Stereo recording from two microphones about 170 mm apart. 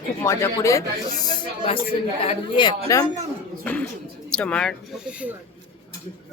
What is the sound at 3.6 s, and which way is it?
Speech, 10° left (ahead or behind).